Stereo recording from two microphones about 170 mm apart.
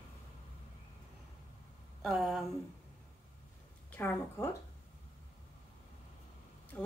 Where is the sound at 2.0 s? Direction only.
Centre (ahead or behind).